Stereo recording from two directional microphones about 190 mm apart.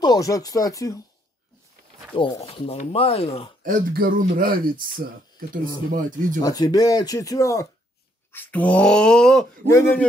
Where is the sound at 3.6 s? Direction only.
50° right (ahead or behind).